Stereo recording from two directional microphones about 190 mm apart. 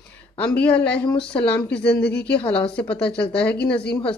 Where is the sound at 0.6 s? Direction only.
5° left (ahead or behind).